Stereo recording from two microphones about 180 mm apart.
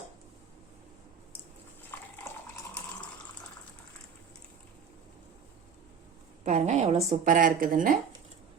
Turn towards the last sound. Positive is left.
turn(degrees=-50)  # may be behind; listen again after turning